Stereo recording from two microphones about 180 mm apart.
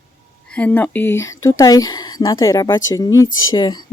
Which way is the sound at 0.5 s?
10° left (ahead or behind).